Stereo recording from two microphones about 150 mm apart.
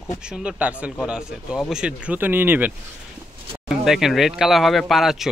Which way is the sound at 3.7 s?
5° right (ahead or behind).